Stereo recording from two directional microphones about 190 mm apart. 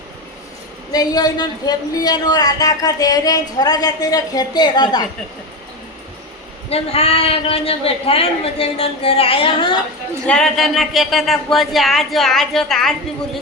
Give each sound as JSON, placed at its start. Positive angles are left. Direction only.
{"t": 0.9, "sound": "speech", "side_deg": 20}
{"t": 6.7, "sound": "speech", "side_deg": 30}
{"t": 10.2, "sound": "speech", "side_deg": 5}